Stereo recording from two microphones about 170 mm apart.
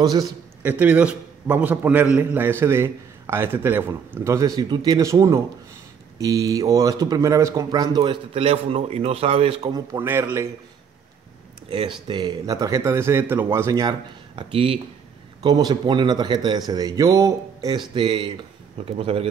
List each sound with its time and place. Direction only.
0.0 s speech: 20° right (ahead or behind)
0.6 s a man's voice: 10° right (ahead or behind); by 9.8 s 30° right (ahead or behind)
9.9 s a man's voice: 15° right (ahead or behind)
11.7 s speech: 30° right (ahead or behind)
14.5 s a man's voice: 35° right (ahead or behind)